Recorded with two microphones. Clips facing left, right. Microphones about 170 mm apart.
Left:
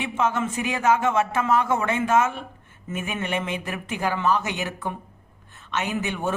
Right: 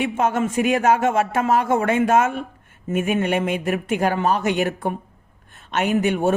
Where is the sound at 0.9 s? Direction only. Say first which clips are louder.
Right 3 dB; 45° right (ahead or behind).